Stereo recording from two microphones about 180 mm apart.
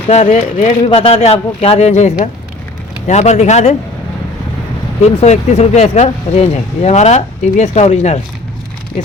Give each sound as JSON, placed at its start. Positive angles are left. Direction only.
{"t": 0.1, "sound": "speech", "side_deg": 40}
{"t": 5.2, "sound": "speech", "side_deg": 40}